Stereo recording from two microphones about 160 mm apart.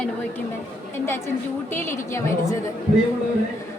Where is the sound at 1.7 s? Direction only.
15° left (ahead or behind).